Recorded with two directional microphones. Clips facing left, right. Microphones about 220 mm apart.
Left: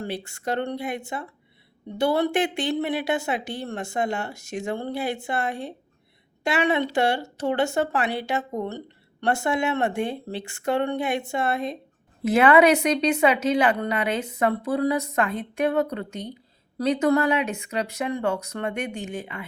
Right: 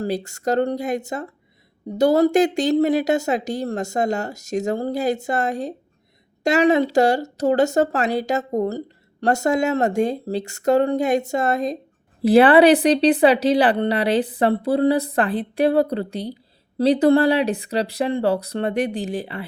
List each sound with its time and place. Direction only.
0.0 s speech: 40° right (ahead or behind)